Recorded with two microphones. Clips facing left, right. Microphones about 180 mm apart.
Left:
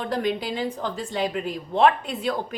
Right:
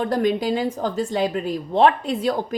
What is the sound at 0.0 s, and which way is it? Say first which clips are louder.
A woman's voice: right 5 dB; 45° right (ahead or behind).